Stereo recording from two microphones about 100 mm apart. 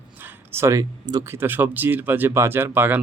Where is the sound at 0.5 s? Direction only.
30° right (ahead or behind).